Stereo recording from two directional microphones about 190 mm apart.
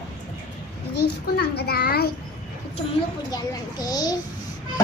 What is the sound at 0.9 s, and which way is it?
A child's voice, 55° left (ahead or behind).